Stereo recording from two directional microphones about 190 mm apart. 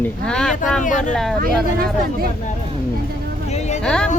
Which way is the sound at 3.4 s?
35° left (ahead or behind).